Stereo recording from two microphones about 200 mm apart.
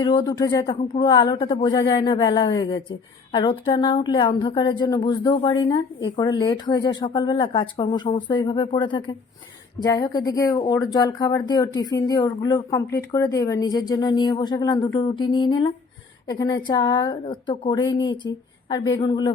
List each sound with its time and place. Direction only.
0.0 s a woman's voice: 25° left (ahead or behind)